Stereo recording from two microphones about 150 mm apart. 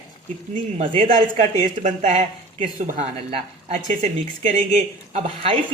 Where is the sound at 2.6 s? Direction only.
40° right (ahead or behind).